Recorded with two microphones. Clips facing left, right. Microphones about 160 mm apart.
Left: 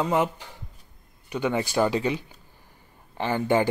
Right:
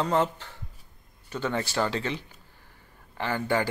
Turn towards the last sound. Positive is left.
turn(degrees=20)  # may be behind; listen again after turning